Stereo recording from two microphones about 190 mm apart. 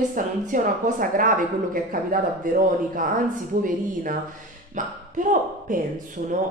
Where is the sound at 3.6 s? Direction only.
45° right (ahead or behind).